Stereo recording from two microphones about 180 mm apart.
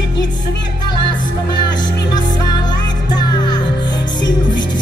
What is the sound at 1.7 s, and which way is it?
Music, 25° left (ahead or behind).